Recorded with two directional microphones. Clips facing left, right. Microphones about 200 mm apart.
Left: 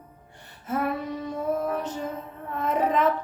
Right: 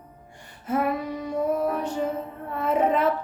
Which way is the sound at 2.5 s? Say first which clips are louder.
Right 2 dB; 10° right (ahead or behind).